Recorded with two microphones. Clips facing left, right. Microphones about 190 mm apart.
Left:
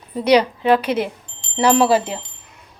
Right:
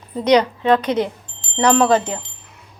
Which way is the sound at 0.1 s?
10° left (ahead or behind).